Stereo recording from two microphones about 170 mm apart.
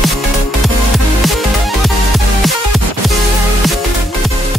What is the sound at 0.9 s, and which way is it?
Music, centre (ahead or behind).